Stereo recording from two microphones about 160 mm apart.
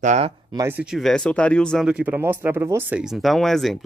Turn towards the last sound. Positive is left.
turn(degrees=0)  # may be behind; listen again after turning